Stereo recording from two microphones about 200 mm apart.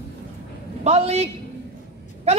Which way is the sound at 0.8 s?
35° right (ahead or behind).